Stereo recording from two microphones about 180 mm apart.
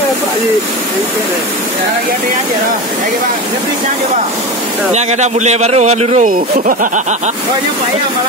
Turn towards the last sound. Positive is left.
turn(degrees=-45)  # may be behind; listen again after turning